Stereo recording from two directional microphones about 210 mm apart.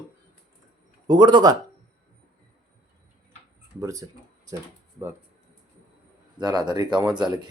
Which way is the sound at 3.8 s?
15° right (ahead or behind).